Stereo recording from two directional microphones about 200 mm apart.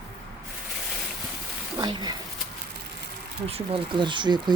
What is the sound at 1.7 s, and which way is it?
Speech, 20° right (ahead or behind).